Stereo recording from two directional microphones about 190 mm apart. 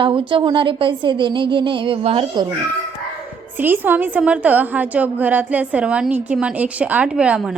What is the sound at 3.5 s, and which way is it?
A woman's voice, 10° right (ahead or behind).